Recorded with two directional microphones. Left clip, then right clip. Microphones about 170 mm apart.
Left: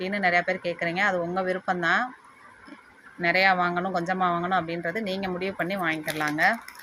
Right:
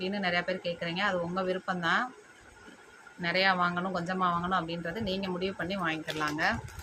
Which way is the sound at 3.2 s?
30° left (ahead or behind).